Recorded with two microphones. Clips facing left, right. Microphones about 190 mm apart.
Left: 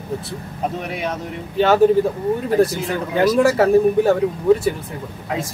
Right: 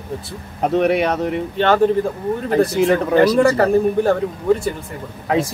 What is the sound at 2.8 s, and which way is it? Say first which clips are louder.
Speech: right 4 dB; 70° right (ahead or behind).